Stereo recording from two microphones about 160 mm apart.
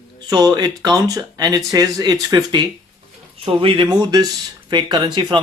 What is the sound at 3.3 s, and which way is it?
Speech, 35° right (ahead or behind).